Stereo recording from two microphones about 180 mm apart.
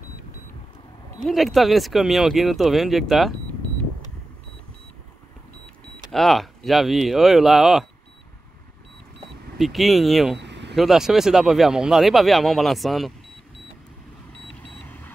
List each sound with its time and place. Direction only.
1.2 s speech: centre (ahead or behind)
6.1 s speech: centre (ahead or behind)
9.6 s speech: centre (ahead or behind)
10.4 s vehicle: 75° right (ahead or behind)
10.8 s speech: centre (ahead or behind)